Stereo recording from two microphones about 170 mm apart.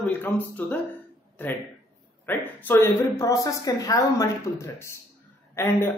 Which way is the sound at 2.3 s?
15° left (ahead or behind).